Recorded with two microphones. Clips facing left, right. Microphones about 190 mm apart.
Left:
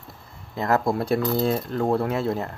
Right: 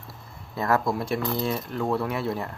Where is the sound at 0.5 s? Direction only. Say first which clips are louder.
Left 2 dB; 20° left (ahead or behind).